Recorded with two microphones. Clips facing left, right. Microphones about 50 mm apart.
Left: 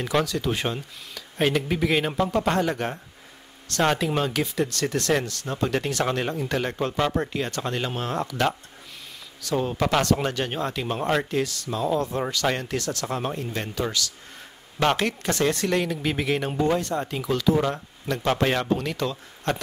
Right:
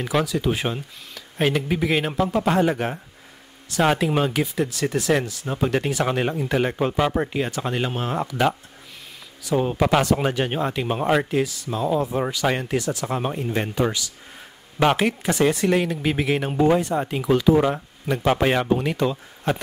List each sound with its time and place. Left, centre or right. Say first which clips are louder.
0.0 s speech: right 2 dB; centre